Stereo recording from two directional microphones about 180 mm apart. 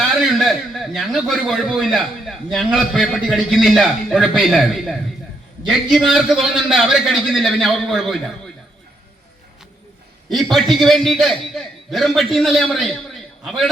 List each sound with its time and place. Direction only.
0.2 s a man's voice: centre (ahead or behind)
10.2 s a man's voice: centre (ahead or behind)